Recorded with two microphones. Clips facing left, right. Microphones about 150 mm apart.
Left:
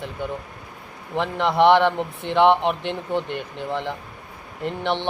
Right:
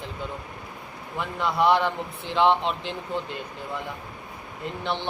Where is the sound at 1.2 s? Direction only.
75° left (ahead or behind).